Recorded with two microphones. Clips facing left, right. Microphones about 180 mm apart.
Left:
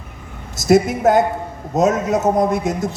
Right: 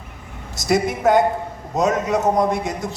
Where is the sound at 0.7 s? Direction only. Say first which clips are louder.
Left 3 dB; 45° left (ahead or behind).